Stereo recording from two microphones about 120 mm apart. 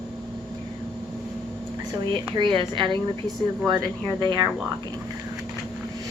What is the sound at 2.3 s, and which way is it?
Speech, 45° right (ahead or behind).